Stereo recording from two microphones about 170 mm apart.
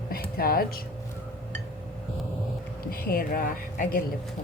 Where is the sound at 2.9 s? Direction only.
60° left (ahead or behind).